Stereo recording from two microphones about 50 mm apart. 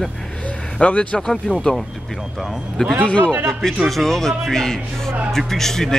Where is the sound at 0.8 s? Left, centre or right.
Left.